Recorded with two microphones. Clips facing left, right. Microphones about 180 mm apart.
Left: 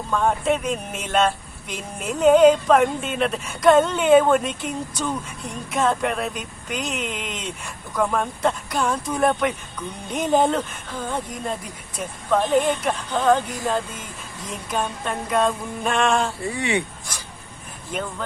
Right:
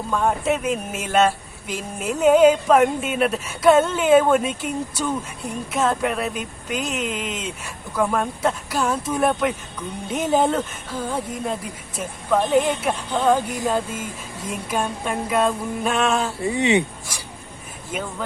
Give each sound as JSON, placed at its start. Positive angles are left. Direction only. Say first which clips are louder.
{"t": 0.1, "sound": "speech", "louder": "even", "side_deg": -5}
{"t": 16.4, "sound": "speech", "louder": "right 5 dB", "side_deg": -20}
{"t": 17.9, "sound": "speech", "louder": "even", "side_deg": -5}